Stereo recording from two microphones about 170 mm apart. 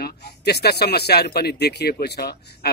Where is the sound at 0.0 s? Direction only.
75° left (ahead or behind).